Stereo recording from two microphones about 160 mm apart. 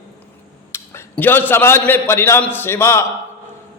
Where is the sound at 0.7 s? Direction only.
15° left (ahead or behind).